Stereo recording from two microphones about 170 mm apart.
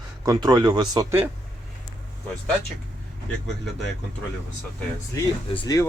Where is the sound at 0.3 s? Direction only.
25° right (ahead or behind).